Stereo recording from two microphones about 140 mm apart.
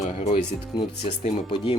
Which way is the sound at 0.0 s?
55° left (ahead or behind).